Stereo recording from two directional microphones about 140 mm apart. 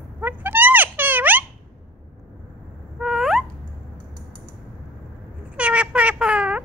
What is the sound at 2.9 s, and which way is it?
Owl, centre (ahead or behind).